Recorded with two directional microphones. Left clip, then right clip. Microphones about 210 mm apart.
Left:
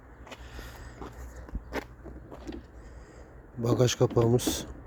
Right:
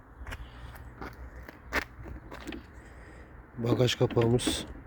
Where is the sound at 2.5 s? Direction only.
30° left (ahead or behind).